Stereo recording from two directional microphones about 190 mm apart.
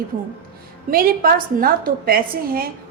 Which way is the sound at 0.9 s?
50° right (ahead or behind).